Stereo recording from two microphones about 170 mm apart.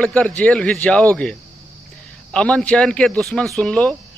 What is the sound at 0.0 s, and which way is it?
A man's voice, 10° left (ahead or behind).